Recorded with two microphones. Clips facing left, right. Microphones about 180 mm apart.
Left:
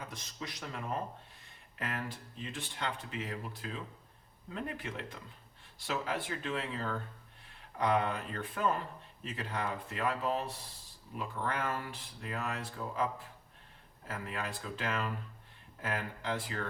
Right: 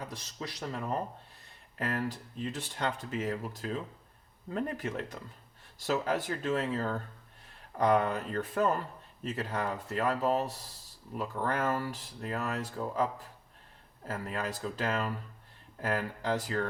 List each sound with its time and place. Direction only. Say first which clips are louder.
0.0 s speech: right 3 dB; 35° right (ahead or behind)